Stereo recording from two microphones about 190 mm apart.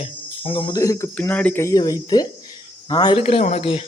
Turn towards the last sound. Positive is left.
turn(degrees=30)  # may be behind; listen again after turning